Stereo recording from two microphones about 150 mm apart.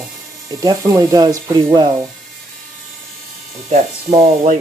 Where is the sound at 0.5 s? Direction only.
25° right (ahead or behind).